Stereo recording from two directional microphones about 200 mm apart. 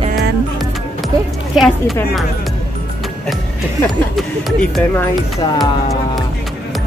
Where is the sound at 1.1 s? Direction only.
15° right (ahead or behind).